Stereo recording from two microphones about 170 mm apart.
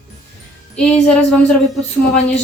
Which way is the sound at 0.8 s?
5° left (ahead or behind).